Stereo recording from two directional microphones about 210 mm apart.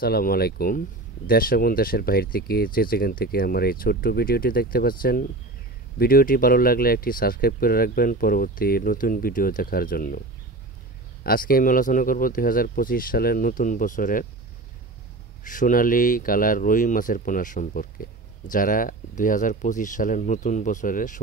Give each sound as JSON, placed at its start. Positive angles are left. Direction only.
{"t": 0.0, "sound": "speech", "side_deg": 45}
{"t": 11.2, "sound": "speech", "side_deg": 45}
{"t": 15.4, "sound": "speech", "side_deg": 40}